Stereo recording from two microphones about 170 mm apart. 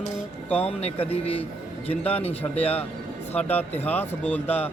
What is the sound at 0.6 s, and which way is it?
Speech, 35° left (ahead or behind).